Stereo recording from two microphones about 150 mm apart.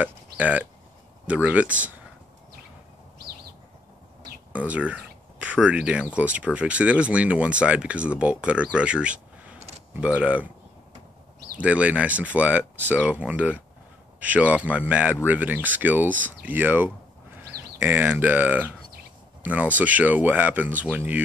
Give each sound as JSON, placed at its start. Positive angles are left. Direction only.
{"t": 0.0, "sound": "speech", "side_deg": -10}
{"t": 4.5, "sound": "speech", "side_deg": -10}
{"t": 9.6, "sound": "a sound", "side_deg": -45}
{"t": 9.9, "sound": "speech", "side_deg": -10}
{"t": 11.5, "sound": "speech", "side_deg": -10}